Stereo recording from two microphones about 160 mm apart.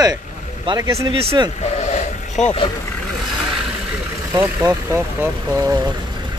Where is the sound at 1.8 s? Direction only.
45° left (ahead or behind).